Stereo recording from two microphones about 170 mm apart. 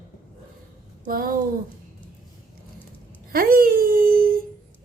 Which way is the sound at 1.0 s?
60° right (ahead or behind).